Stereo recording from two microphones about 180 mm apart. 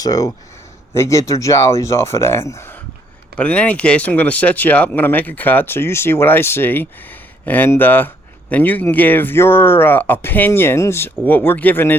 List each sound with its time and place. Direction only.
0.0 s speech: 20° left (ahead or behind)